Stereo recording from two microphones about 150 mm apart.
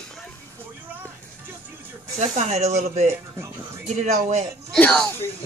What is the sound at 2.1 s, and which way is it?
Speech, 50° right (ahead or behind).